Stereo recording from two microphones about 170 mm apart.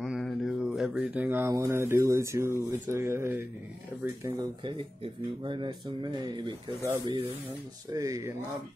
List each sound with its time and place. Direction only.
0.0 s mantra: centre (ahead or behind)
1.5 s speech: 15° right (ahead or behind)
6.8 s speech: 20° right (ahead or behind)